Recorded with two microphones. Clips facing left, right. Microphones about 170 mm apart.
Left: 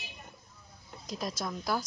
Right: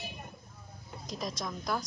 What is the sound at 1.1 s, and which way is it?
Speech, centre (ahead or behind).